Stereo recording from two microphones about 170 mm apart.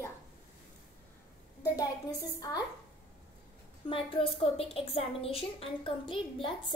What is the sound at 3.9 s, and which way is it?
A child's voice, 30° left (ahead or behind).